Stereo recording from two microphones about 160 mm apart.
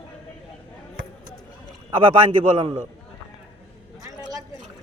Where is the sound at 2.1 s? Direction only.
35° right (ahead or behind).